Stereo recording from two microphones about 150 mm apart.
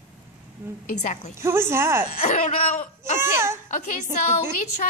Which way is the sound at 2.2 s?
55° left (ahead or behind).